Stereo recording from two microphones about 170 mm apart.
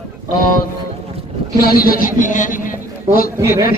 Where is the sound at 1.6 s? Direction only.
60° left (ahead or behind).